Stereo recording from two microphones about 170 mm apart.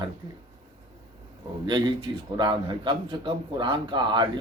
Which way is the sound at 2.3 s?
25° right (ahead or behind).